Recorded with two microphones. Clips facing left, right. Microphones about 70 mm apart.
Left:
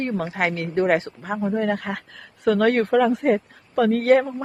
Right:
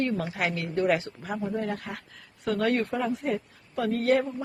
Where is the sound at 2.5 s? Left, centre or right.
Left.